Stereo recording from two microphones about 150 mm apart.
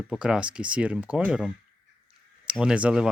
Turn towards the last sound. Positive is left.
turn(degrees=-5)  # may be behind; listen again after turning